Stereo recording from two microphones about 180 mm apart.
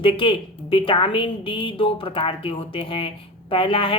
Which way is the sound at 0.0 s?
30° left (ahead or behind).